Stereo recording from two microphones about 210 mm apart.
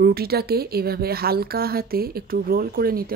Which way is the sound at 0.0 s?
45° right (ahead or behind).